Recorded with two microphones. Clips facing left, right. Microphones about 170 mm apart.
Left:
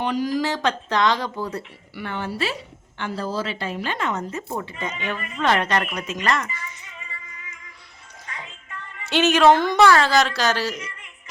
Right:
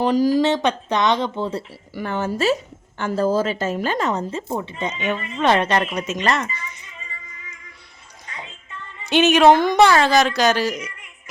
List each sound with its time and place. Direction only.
0.0 s speech: 35° right (ahead or behind)
2.0 s a woman's voice: 45° right (ahead or behind); by 6.7 s 25° right (ahead or behind)
9.0 s a woman's voice: 15° right (ahead or behind)